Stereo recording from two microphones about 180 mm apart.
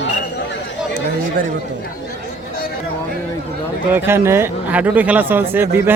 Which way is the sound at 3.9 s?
15° right (ahead or behind).